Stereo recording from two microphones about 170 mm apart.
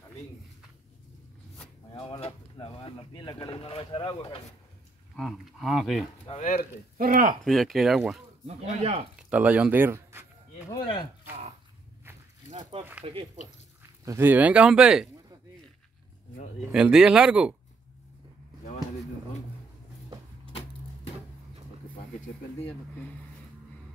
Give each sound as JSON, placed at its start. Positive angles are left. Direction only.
{"t": 1.9, "sound": "drawer open or close", "side_deg": 30}
{"t": 2.5, "sound": "speech", "side_deg": 30}
{"t": 5.1, "sound": "speech", "side_deg": 0}
{"t": 6.4, "sound": "speech", "side_deg": 50}
{"t": 7.0, "sound": "speech", "side_deg": -55}
{"t": 7.4, "sound": "speech", "side_deg": 0}
{"t": 8.5, "sound": "speech", "side_deg": -35}
{"t": 9.3, "sound": "speech", "side_deg": -10}
{"t": 12.0, "sound": "walk", "side_deg": -15}
{"t": 13.0, "sound": "speech", "side_deg": -30}
{"t": 14.0, "sound": "speech", "side_deg": -15}
{"t": 16.7, "sound": "speech", "side_deg": -5}